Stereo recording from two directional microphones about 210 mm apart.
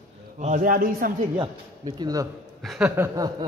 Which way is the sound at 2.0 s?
15° right (ahead or behind).